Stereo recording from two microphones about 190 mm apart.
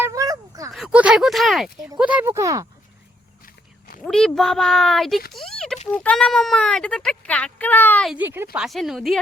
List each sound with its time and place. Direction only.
0.0 s a sound: 20° right (ahead or behind)
0.7 s a child's voice: 5° right (ahead or behind)
3.4 s wild animals: 50° left (ahead or behind)
4.0 s a child's voice: 5° left (ahead or behind)
5.3 s a sound: centre (ahead or behind)
5.9 s a child's voice: 5° left (ahead or behind)
8.1 s a child's voice: 10° right (ahead or behind)